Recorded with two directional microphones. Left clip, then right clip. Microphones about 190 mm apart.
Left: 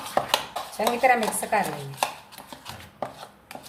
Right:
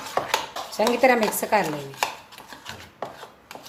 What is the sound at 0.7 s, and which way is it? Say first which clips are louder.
Speech: right 2 dB; 55° right (ahead or behind).